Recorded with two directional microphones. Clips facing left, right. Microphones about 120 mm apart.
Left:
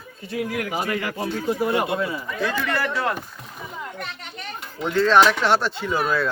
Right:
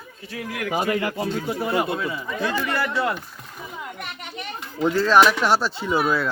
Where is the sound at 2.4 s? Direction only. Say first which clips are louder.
Even; 20° right (ahead or behind).